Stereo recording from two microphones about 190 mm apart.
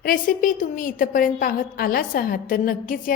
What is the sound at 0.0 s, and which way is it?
A woman's voice, 45° left (ahead or behind).